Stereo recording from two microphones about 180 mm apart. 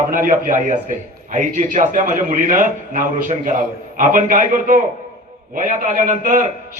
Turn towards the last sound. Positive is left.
turn(degrees=-45)  # may be behind; listen again after turning